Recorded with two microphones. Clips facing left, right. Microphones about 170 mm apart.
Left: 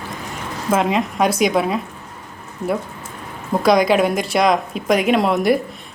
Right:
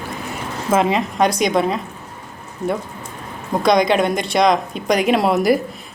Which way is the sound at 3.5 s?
5° left (ahead or behind).